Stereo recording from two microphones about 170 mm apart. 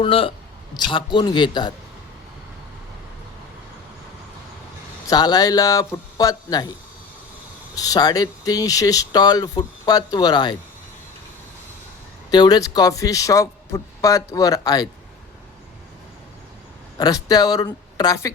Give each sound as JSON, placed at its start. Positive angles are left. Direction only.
{"t": 0.0, "sound": "speech", "side_deg": 30}
{"t": 5.0, "sound": "speech", "side_deg": 25}
{"t": 7.8, "sound": "speech", "side_deg": 20}
{"t": 12.3, "sound": "speech", "side_deg": 25}
{"t": 17.0, "sound": "speech", "side_deg": 20}